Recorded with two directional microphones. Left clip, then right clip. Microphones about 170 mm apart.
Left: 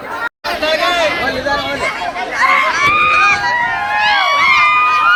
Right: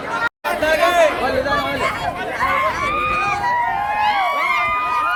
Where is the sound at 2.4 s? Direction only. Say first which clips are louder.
Left 7 dB; 15° right (ahead or behind).